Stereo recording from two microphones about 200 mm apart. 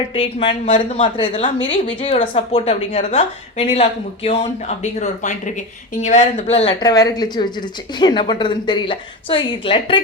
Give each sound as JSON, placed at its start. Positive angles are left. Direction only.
{"t": 0.1, "sound": "a woman's voice", "side_deg": 25}